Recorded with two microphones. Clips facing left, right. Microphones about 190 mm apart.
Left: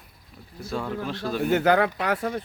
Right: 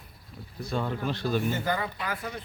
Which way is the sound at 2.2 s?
50° left (ahead or behind).